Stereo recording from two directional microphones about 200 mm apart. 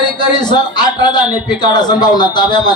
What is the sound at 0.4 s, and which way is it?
A man's voice, 20° left (ahead or behind).